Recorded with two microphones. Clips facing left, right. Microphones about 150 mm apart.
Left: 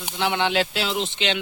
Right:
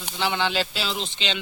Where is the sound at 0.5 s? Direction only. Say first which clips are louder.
Left 4 dB; 65° left (ahead or behind).